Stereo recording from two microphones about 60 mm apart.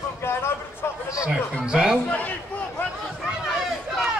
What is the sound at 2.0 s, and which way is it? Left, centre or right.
Speech, left.